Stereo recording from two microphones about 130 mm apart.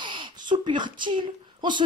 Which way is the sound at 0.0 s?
40° right (ahead or behind).